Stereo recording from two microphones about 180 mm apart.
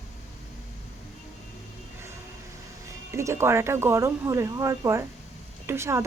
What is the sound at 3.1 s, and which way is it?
Speech, 15° right (ahead or behind).